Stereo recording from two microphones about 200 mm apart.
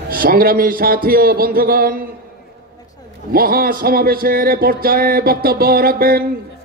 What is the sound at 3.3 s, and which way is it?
Speech, 45° right (ahead or behind).